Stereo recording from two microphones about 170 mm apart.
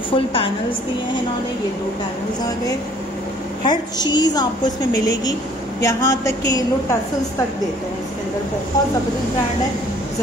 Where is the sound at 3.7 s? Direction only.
25° left (ahead or behind).